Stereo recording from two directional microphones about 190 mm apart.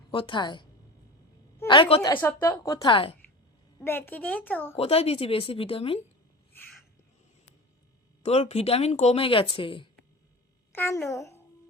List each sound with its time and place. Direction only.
0.1 s a woman's voice: 25° left (ahead or behind)
3.8 s a woman's voice: 10° left (ahead or behind)
4.8 s speech: 30° left (ahead or behind)
8.2 s speech: 35° left (ahead or behind)
10.7 s a child's voice: 15° left (ahead or behind)